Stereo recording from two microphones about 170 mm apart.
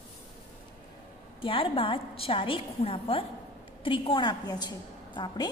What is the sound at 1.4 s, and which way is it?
A woman's voice, 30° left (ahead or behind).